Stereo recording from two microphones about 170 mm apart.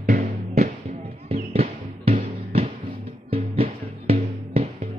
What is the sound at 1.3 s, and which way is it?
Music, 35° right (ahead or behind).